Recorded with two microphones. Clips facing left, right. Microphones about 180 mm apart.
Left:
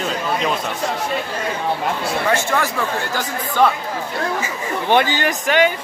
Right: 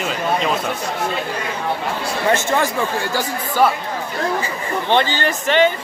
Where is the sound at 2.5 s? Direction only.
20° right (ahead or behind).